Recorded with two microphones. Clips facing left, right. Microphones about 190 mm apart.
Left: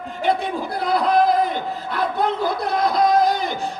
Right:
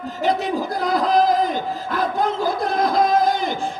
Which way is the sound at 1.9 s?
45° right (ahead or behind).